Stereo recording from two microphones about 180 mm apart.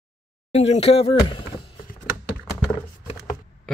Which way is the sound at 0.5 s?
35° left (ahead or behind).